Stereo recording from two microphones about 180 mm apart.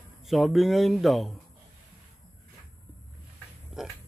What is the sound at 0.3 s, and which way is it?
Speech, centre (ahead or behind).